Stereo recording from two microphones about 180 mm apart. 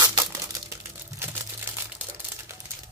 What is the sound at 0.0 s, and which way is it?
Crumpling, 20° right (ahead or behind).